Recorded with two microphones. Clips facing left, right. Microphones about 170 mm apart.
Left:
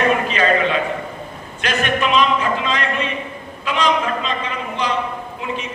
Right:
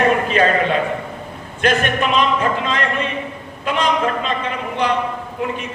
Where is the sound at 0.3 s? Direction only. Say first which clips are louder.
Right 2 dB; 50° right (ahead or behind).